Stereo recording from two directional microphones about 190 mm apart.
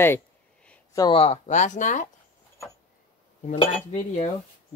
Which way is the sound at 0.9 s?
25° left (ahead or behind).